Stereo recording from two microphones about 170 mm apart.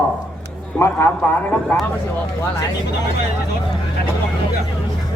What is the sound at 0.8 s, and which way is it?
Speech, 15° left (ahead or behind).